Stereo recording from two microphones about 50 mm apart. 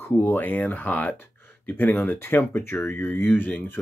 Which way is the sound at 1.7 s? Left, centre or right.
Left.